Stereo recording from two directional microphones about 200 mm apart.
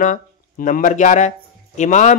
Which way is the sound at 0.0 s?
40° left (ahead or behind).